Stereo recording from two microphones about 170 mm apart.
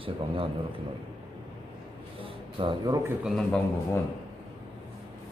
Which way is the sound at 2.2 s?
30° right (ahead or behind).